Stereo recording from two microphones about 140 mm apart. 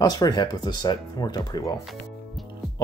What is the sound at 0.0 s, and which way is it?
Speech, 30° left (ahead or behind).